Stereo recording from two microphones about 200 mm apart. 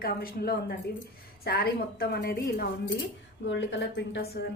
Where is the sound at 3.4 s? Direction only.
60° left (ahead or behind).